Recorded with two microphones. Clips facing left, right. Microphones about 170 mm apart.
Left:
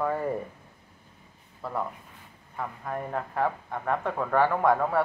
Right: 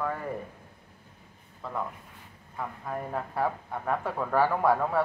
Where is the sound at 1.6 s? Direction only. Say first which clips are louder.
Left 2 dB; 5° left (ahead or behind).